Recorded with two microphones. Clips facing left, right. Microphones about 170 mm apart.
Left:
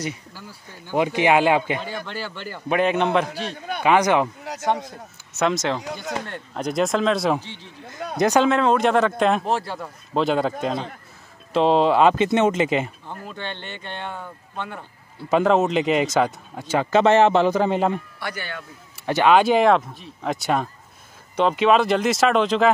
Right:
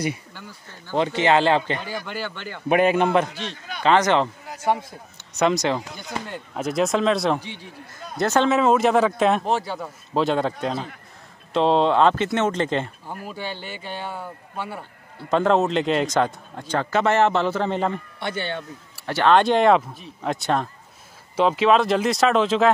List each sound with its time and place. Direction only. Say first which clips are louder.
0.3 s a man's voice: even; 5° left (ahead or behind)
1.8 s a man's voice: even; centre (ahead or behind)
3.3 s speech: left 4 dB; 50° left (ahead or behind)
3.8 s a man's voice: even; 10° left (ahead or behind)
5.3 s a man's voice: right 2 dB; centre (ahead or behind)
7.3 s speech: left 1 dB; 15° right (ahead or behind)
8.2 s a man's voice: left 2 dB; 15° left (ahead or behind)
8.5 s a man's voice: even; 5° right (ahead or behind)
13.0 s speech: right 1 dB; 10° right (ahead or behind)
15.2 s a man's voice: left 1 dB; 5° left (ahead or behind)
16.9 s a man's voice: left 4 dB; 20° left (ahead or behind)
18.2 s speech: right 4 dB; 25° right (ahead or behind)
18.9 s speech: left 2 dB; 15° left (ahead or behind)
19.3 s a man's voice: right 1 dB; 5° left (ahead or behind)